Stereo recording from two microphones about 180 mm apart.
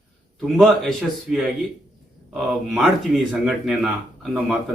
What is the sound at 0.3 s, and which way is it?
Speech, centre (ahead or behind).